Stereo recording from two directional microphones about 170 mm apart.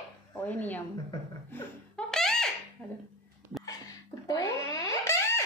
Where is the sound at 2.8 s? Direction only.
15° left (ahead or behind).